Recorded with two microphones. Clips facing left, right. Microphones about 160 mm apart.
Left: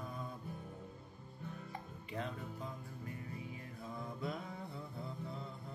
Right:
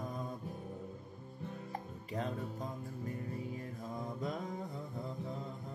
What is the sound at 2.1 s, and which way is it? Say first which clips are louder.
Music: right 4 dB; 40° right (ahead or behind).